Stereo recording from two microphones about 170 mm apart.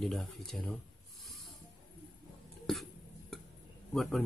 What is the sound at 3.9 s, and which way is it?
Speech, centre (ahead or behind).